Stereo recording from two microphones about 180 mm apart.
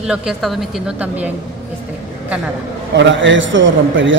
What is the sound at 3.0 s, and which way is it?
A man's voice, 90° right.